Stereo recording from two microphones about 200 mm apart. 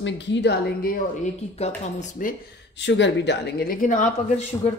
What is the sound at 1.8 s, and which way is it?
Speech, 40° left (ahead or behind).